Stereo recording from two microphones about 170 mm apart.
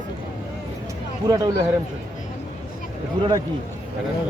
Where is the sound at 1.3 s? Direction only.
20° right (ahead or behind).